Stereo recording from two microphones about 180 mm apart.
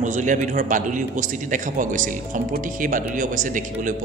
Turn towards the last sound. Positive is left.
turn(degrees=-45)  # may be behind; listen again after turning